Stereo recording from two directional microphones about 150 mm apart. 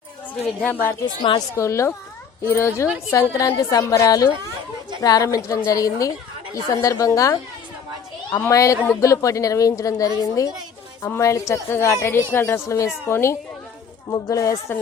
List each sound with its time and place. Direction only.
0.4 s a woman's voice: 10° left (ahead or behind)
1.0 s a woman's voice: 30° left (ahead or behind)
1.5 s a woman's voice: 20° left (ahead or behind)